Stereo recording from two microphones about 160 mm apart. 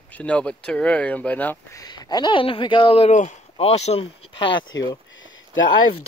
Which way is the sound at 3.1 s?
50° left (ahead or behind).